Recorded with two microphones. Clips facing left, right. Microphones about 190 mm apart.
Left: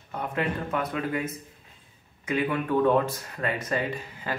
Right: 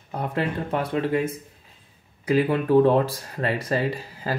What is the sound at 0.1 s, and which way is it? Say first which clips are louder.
Speech: right 3 dB; 35° right (ahead or behind).